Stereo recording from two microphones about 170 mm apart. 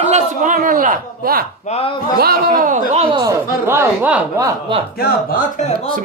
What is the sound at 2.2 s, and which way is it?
Speech, 60° right (ahead or behind).